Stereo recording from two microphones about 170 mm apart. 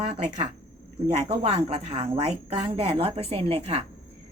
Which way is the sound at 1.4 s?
40° right (ahead or behind).